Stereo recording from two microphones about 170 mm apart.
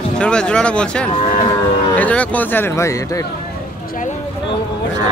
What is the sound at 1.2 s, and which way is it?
Speech, 35° left (ahead or behind).